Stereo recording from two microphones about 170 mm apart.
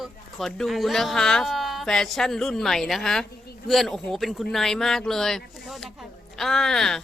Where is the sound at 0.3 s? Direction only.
Centre (ahead or behind).